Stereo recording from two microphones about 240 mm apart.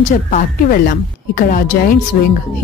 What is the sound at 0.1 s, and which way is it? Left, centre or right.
Speech, left.